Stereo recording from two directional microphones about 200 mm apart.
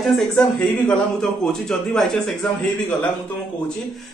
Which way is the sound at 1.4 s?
5° left (ahead or behind).